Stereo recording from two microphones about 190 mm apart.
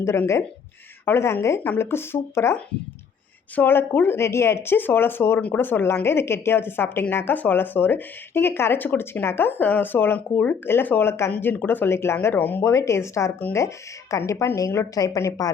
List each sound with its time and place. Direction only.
0.0 s speech: 15° left (ahead or behind)